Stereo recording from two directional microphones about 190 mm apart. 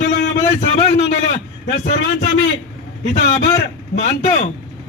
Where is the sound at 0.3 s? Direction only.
35° left (ahead or behind).